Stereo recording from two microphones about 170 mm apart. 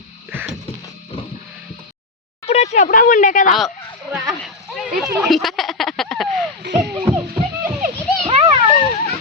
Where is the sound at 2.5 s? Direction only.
40° left (ahead or behind).